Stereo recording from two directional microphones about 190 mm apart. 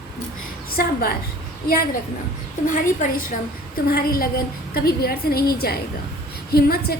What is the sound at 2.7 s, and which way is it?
A woman's voice, 45° left (ahead or behind).